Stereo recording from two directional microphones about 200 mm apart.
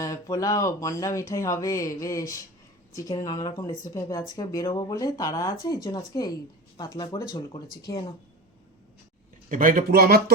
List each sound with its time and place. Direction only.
0.0 s speech: 15° left (ahead or behind)
9.5 s speech: 40° right (ahead or behind)